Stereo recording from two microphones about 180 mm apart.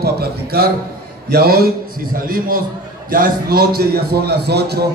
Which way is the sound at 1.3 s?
60° right (ahead or behind).